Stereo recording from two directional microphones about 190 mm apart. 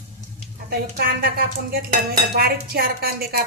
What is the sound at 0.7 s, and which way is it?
Speech, 55° right (ahead or behind).